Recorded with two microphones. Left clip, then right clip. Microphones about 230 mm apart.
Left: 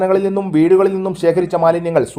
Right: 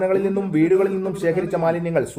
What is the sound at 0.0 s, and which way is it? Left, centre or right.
Speech, left.